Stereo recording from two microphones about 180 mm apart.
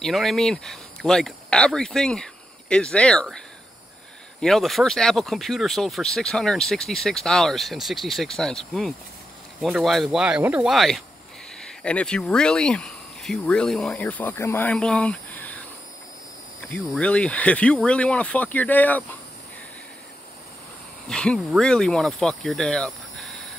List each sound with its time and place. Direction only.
0.0 s speech: centre (ahead or behind)
16.6 s speech: 5° left (ahead or behind)
21.1 s speech: 5° left (ahead or behind)